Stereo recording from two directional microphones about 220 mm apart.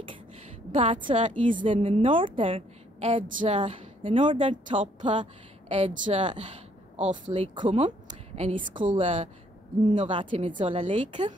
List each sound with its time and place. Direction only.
0.7 s a woman's voice: 25° right (ahead or behind)
1.7 s a woman's voice: 25° right (ahead or behind)